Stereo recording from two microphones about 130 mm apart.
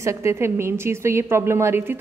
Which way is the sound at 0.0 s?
20° right (ahead or behind).